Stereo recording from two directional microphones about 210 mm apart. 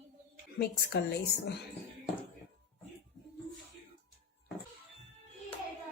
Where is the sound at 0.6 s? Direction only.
50° left (ahead or behind).